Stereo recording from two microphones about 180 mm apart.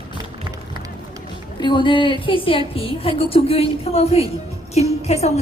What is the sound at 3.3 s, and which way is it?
A woman's voice, 35° left (ahead or behind).